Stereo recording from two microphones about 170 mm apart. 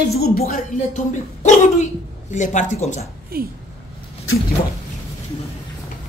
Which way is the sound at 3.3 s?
65° right (ahead or behind).